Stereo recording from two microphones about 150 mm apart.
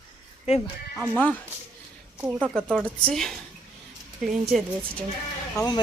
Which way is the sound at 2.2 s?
10° right (ahead or behind).